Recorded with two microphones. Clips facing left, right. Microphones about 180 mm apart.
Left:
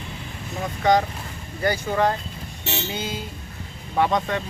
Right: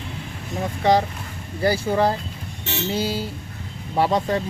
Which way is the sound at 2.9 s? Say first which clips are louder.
Right 6 dB; 35° right (ahead or behind).